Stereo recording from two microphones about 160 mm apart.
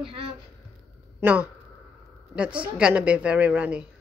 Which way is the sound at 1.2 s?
10° right (ahead or behind).